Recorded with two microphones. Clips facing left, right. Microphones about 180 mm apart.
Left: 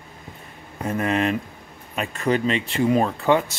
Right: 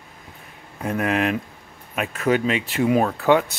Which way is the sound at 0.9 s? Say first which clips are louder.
Even; centre (ahead or behind).